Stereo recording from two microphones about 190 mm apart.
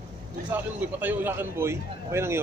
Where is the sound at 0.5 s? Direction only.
10° right (ahead or behind).